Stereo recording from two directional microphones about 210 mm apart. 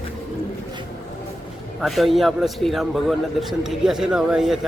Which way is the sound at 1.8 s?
Centre (ahead or behind).